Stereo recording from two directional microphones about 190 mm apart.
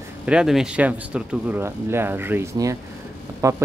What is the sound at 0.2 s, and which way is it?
Speech, 5° right (ahead or behind).